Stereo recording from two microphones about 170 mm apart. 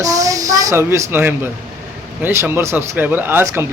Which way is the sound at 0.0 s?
20° right (ahead or behind).